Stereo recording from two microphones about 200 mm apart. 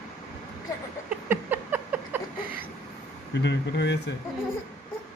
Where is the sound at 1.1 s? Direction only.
10° right (ahead or behind).